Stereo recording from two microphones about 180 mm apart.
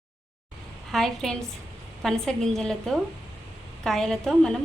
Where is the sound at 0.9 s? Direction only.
Centre (ahead or behind).